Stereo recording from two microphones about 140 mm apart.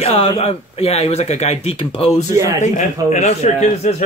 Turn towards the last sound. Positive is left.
turn(degrees=50)  # may be behind; listen again after turning